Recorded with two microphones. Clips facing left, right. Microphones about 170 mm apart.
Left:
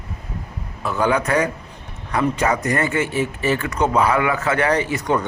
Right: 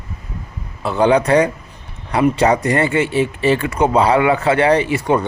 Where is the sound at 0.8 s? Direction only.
25° right (ahead or behind).